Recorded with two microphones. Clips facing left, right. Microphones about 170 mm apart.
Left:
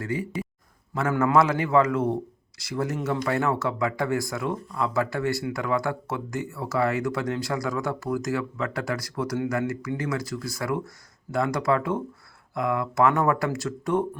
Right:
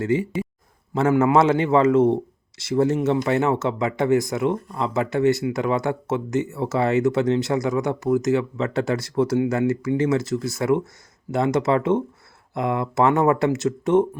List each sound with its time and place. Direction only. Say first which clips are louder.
0.0 s speech: right 7 dB; 25° right (ahead or behind)